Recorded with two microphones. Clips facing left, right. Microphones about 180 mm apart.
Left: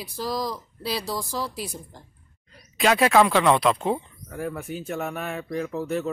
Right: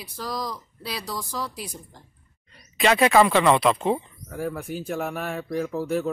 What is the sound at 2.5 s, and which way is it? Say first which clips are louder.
Speech: even; centre (ahead or behind).